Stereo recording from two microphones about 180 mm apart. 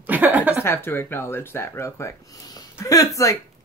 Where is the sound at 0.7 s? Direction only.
10° left (ahead or behind).